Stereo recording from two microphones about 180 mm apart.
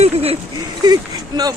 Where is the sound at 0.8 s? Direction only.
20° right (ahead or behind).